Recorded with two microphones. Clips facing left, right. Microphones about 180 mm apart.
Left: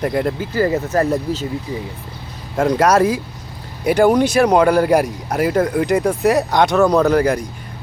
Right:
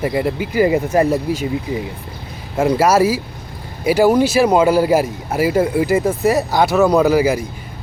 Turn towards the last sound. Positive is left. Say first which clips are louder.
# right 1 dB
turn(degrees=-5)  # may be behind; listen again after turning